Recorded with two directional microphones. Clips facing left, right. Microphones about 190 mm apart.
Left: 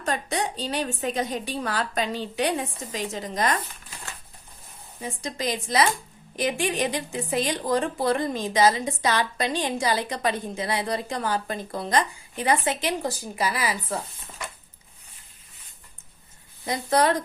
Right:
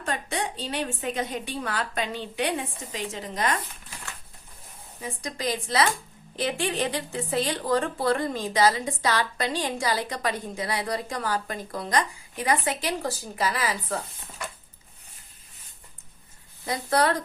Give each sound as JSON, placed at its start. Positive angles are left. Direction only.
{"t": 0.0, "sound": "a woman's voice", "side_deg": 40}
{"t": 5.2, "sound": "a woman's voice", "side_deg": 20}
{"t": 16.6, "sound": "a woman's voice", "side_deg": 20}